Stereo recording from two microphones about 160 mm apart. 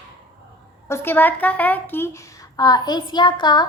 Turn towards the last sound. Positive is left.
turn(degrees=25)  # may be behind; listen again after turning